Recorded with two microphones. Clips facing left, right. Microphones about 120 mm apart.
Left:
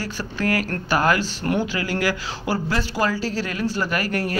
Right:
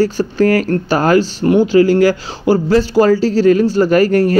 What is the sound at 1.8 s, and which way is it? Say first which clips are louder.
Speech: right 14 dB; 30° right (ahead or behind).